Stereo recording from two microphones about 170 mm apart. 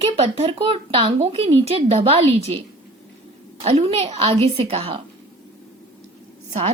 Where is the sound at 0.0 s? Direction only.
35° right (ahead or behind).